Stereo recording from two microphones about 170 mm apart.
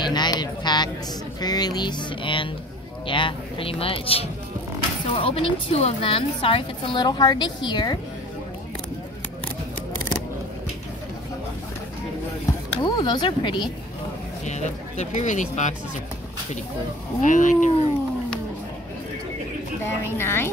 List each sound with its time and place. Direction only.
0.0 s a sound: 25° left (ahead or behind)
1.4 s a woman's voice: 25° left (ahead or behind)
12.8 s speech: 25° left (ahead or behind)
14.4 s speech: 45° left (ahead or behind)
17.2 s speech: 50° left (ahead or behind)
19.9 s a woman's voice: 15° left (ahead or behind)